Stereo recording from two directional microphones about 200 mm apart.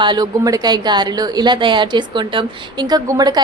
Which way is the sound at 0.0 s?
20° right (ahead or behind).